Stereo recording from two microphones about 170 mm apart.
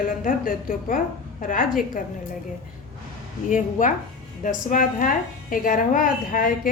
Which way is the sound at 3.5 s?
50° left (ahead or behind).